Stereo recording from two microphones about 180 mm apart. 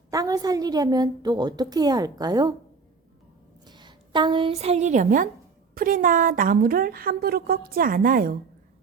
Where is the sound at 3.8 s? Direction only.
25° right (ahead or behind).